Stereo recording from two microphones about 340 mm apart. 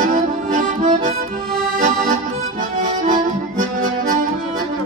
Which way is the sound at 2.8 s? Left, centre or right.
Right.